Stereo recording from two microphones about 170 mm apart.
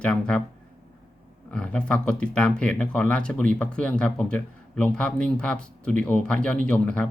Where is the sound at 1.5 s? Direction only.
5° left (ahead or behind).